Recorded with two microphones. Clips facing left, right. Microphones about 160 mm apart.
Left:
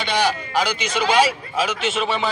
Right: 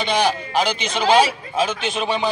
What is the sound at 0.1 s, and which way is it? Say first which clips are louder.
Speech: even; 20° right (ahead or behind).